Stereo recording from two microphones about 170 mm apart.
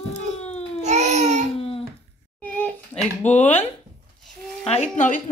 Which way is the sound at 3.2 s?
10° left (ahead or behind).